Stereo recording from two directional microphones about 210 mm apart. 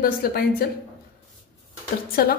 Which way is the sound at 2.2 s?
45° left (ahead or behind).